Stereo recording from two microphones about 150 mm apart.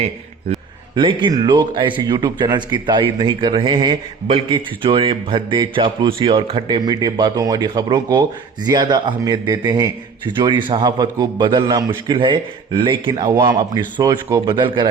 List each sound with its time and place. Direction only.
0.9 s a man's voice: 35° right (ahead or behind)